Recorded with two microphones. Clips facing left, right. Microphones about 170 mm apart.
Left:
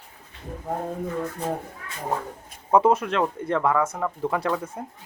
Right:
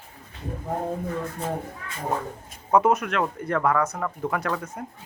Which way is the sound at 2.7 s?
30° left (ahead or behind).